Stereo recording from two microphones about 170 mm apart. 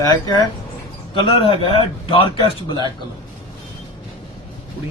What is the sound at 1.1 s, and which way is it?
A man's voice, 30° left (ahead or behind).